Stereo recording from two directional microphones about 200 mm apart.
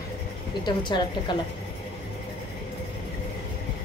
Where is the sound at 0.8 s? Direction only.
25° left (ahead or behind).